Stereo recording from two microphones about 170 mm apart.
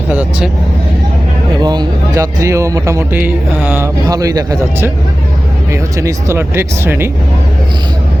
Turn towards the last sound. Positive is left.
turn(degrees=-15)  # may be behind; listen again after turning